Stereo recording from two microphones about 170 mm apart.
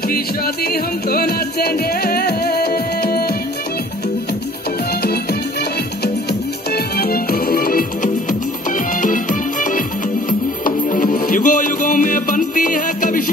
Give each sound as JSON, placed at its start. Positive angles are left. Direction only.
{"t": 0.7, "sound": "music", "side_deg": 65}
{"t": 6.7, "sound": "music", "side_deg": 65}